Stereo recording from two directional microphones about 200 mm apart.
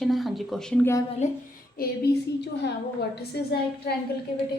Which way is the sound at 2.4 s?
55° left (ahead or behind).